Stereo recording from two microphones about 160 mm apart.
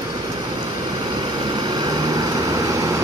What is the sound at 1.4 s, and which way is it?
Vehicle, 25° right (ahead or behind).